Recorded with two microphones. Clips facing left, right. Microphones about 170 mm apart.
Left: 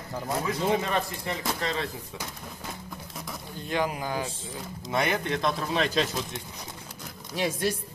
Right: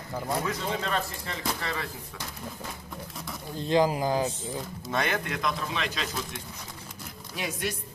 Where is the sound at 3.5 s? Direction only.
30° right (ahead or behind).